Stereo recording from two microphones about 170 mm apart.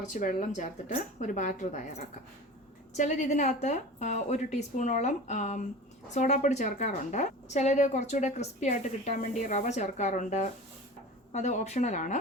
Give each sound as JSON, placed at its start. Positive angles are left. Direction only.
{"t": 0.0, "sound": "a woman's voice", "side_deg": 50}